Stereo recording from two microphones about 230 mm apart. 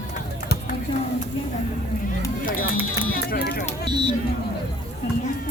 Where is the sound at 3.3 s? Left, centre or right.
Left.